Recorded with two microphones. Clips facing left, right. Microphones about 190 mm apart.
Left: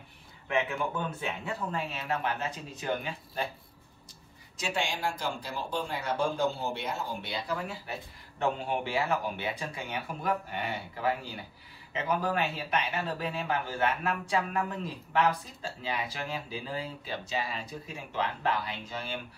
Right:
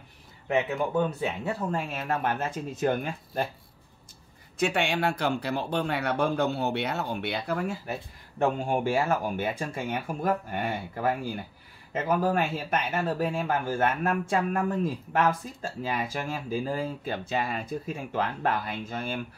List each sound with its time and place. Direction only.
1.4 s speech: 50° right (ahead or behind)
4.6 s speech: 60° right (ahead or behind)